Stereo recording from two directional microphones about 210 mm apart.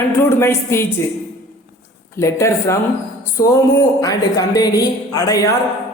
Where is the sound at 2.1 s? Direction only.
15° left (ahead or behind).